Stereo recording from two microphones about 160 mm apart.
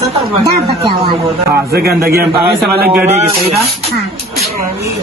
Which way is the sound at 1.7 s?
80° right.